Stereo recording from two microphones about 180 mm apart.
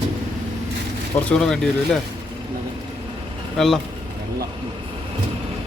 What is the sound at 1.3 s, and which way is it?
Speech, 5° left (ahead or behind).